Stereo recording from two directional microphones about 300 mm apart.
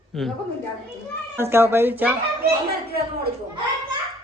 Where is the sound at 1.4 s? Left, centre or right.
Centre.